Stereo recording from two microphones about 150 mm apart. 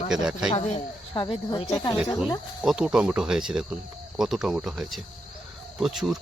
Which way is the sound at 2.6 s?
5° right (ahead or behind).